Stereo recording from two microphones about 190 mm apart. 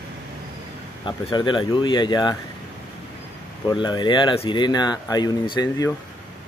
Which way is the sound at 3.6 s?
25° left (ahead or behind).